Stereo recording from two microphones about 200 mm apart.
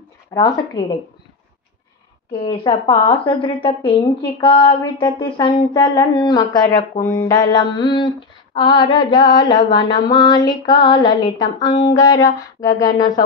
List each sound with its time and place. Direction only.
0.3 s speech: 20° left (ahead or behind)
2.4 s speech: 25° left (ahead or behind)
11.9 s music: 20° left (ahead or behind)